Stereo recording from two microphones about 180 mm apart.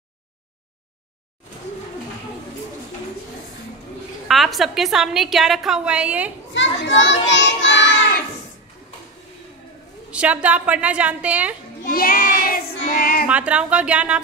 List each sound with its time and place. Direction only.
4.3 s a woman's voice: centre (ahead or behind)
6.5 s children playing: 90° left
10.1 s a woman's voice: 10° right (ahead or behind)
11.8 s child singing: 55° left (ahead or behind)
13.3 s a woman's voice: 5° right (ahead or behind)